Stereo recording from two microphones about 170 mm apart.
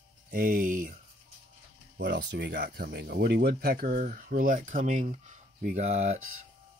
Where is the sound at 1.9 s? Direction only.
75° right (ahead or behind).